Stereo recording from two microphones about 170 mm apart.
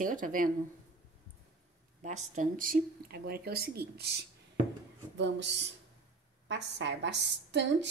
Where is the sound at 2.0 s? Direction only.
45° right (ahead or behind); by 4.2 s 70° right (ahead or behind).